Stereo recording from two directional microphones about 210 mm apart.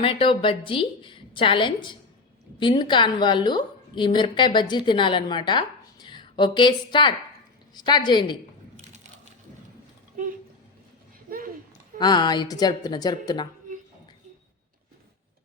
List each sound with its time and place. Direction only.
0.0 s a woman's voice: 25° left (ahead or behind)
11.3 s a sound: 45° right (ahead or behind)
11.9 s a woman's voice: 20° left (ahead or behind)